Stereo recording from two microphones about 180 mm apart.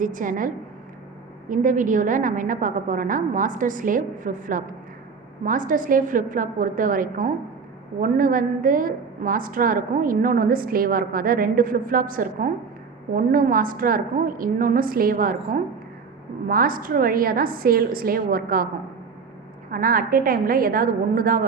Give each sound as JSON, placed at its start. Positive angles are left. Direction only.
{"t": 0.0, "sound": "a woman's voice", "side_deg": -45}
{"t": 19.7, "sound": "a woman's voice", "side_deg": -50}